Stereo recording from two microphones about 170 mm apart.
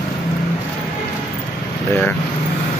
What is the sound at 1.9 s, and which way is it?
Speech, 10° left (ahead or behind).